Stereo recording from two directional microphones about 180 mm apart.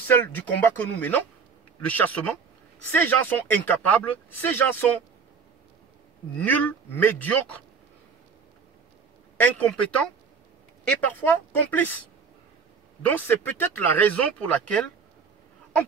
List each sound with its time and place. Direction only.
0.0 s speech: 10° left (ahead or behind)
6.3 s speech: 10° left (ahead or behind)
9.4 s speech: 5° left (ahead or behind)
13.0 s speech: 10° left (ahead or behind)